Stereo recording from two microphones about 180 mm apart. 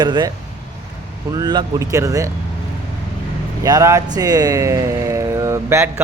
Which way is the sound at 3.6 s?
15° right (ahead or behind).